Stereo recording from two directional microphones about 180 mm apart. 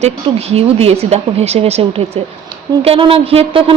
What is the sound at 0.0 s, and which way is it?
Speech, 35° right (ahead or behind).